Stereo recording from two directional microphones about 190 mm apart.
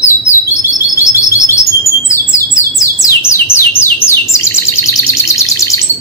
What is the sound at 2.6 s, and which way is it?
Bird, 15° left (ahead or behind).